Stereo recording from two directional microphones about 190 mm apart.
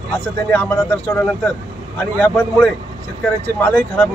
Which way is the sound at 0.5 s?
10° left (ahead or behind).